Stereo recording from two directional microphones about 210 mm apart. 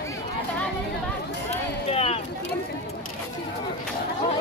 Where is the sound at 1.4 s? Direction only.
30° left (ahead or behind).